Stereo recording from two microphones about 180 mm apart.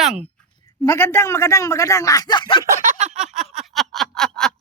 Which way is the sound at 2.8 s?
45° right (ahead or behind).